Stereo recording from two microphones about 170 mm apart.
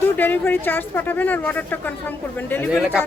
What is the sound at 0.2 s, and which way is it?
Speech, 10° left (ahead or behind).